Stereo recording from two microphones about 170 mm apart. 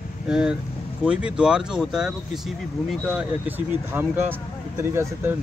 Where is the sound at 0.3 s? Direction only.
5° right (ahead or behind).